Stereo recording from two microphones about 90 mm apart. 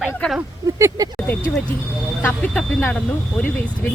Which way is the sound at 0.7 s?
35° right (ahead or behind).